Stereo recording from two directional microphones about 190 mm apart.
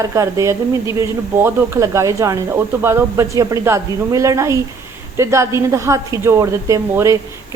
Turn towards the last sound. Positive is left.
turn(degrees=-15)  # may be behind; listen again after turning